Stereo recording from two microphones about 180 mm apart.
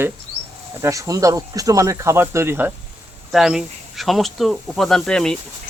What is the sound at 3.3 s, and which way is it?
Speech, centre (ahead or behind).